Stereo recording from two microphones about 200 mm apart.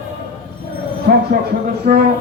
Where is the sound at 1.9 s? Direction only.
40° right (ahead or behind).